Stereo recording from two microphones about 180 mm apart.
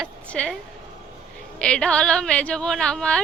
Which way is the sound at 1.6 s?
5° left (ahead or behind).